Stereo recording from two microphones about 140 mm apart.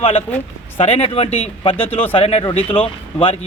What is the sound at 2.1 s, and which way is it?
Speech, 40° left (ahead or behind).